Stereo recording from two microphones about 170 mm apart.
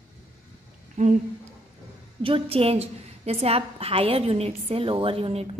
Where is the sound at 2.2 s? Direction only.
35° right (ahead or behind).